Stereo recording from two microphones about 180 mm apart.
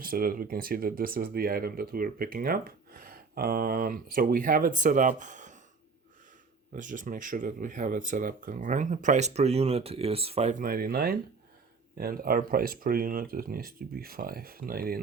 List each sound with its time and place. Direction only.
0.0 s speech: 55° right (ahead or behind)
6.7 s speech: 45° right (ahead or behind)
10.6 s speech: 55° right (ahead or behind)